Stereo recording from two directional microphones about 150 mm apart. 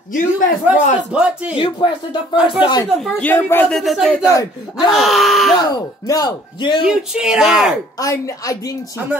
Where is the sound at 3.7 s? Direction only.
Centre (ahead or behind).